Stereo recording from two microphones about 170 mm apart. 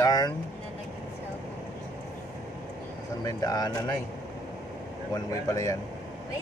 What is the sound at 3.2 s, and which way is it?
Mantra, 20° left (ahead or behind).